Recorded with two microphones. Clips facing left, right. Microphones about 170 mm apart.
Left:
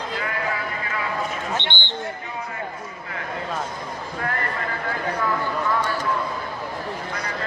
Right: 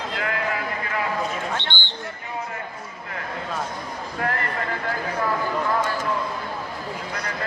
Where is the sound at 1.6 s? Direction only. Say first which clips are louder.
Left 2 dB; 20° left (ahead or behind).